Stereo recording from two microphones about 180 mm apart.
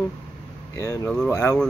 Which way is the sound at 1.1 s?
5° left (ahead or behind).